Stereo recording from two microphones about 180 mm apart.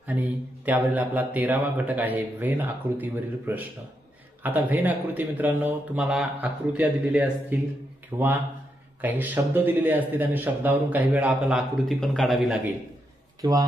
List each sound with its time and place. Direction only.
0.0 s mantra: 10° right (ahead or behind)
13.4 s speech: 20° right (ahead or behind)